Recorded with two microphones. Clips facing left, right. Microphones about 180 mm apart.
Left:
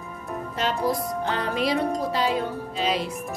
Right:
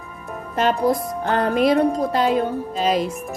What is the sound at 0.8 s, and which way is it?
Speech, 55° right (ahead or behind).